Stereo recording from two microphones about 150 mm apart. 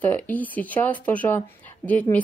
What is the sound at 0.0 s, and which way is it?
Speech, 10° left (ahead or behind).